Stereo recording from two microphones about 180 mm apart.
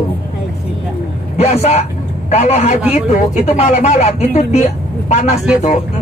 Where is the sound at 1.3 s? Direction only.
40° left (ahead or behind).